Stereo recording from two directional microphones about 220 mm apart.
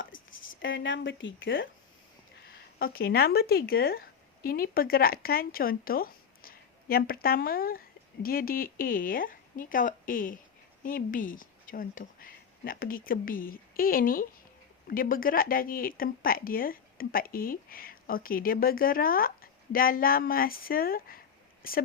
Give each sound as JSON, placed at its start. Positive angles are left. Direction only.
{"t": 0.3, "sound": "speech", "side_deg": 60}
{"t": 2.7, "sound": "speech", "side_deg": 45}